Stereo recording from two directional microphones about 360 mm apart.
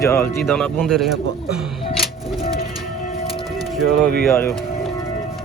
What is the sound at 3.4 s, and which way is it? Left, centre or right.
Music, centre.